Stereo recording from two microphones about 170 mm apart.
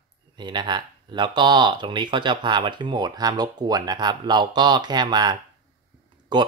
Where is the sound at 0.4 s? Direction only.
25° right (ahead or behind).